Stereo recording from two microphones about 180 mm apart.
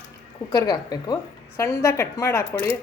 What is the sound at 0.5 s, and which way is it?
A woman's voice, 20° left (ahead or behind).